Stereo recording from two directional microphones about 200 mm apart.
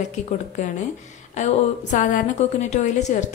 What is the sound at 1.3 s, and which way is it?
A woman's voice, 40° left (ahead or behind).